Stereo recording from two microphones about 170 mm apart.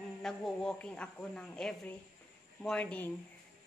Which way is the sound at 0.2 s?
5° left (ahead or behind).